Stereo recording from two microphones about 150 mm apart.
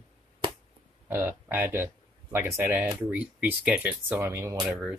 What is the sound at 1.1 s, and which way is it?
Speech, 15° right (ahead or behind).